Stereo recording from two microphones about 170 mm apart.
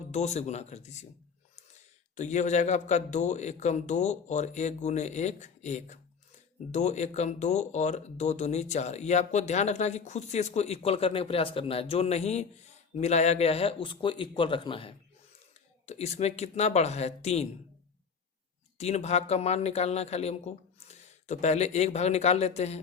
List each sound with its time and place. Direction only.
0.1 s speech: 40° left (ahead or behind)
2.1 s a man's voice: 45° left (ahead or behind)
18.8 s speech: 40° left (ahead or behind)